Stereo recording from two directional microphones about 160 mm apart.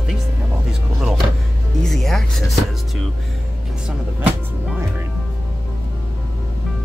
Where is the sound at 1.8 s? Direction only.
Centre (ahead or behind).